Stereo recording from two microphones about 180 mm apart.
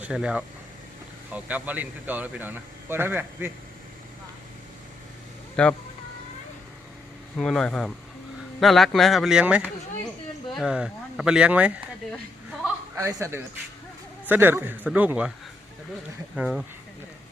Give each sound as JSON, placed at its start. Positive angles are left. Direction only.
{"t": 0.0, "sound": "speech", "side_deg": -5}
{"t": 5.6, "sound": "speech", "side_deg": 5}
{"t": 7.3, "sound": "speech", "side_deg": 5}
{"t": 13.0, "sound": "speech", "side_deg": -15}
{"t": 16.3, "sound": "speech", "side_deg": 0}